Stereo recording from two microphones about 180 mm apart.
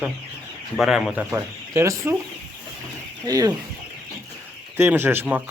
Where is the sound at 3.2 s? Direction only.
20° right (ahead or behind).